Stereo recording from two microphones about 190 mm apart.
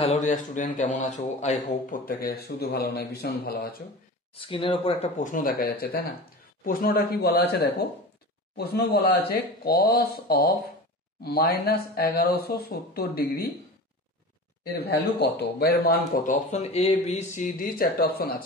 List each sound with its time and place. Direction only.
0.0 s speech: 35° left (ahead or behind)
2.0 s speech: 50° left (ahead or behind)
4.4 s speech: 30° left (ahead or behind); by 7.4 s 55° left (ahead or behind)
8.5 s speech: 55° left (ahead or behind)
14.6 s speech: 55° left (ahead or behind)
16.5 s speech: 30° left (ahead or behind); by 18.4 s 50° left (ahead or behind)